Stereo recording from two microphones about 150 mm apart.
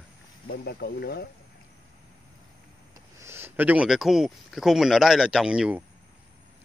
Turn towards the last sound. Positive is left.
turn(degrees=-5)  # may be behind; listen again after turning